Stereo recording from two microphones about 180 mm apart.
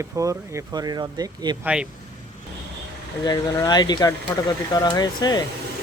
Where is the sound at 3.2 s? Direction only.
20° left (ahead or behind).